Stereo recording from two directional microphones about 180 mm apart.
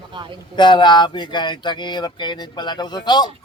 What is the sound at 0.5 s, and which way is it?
Speech, 25° left (ahead or behind).